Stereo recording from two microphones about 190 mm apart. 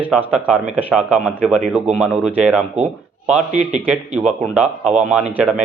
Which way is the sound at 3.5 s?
40° right (ahead or behind).